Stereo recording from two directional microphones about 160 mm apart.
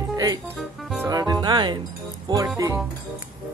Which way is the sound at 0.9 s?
25° right (ahead or behind).